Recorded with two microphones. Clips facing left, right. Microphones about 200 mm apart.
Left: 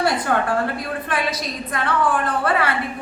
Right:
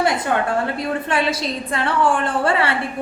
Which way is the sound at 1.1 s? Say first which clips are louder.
Right 2 dB; 25° right (ahead or behind).